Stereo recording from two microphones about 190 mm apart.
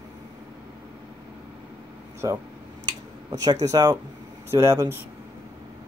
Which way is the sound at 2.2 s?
20° right (ahead or behind).